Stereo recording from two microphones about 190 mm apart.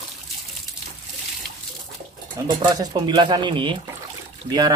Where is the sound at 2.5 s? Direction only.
20° right (ahead or behind).